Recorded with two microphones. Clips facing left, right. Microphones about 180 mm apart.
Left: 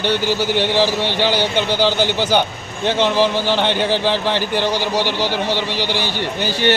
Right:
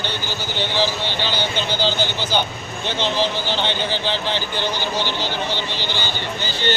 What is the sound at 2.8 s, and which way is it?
Speech, 60° left (ahead or behind).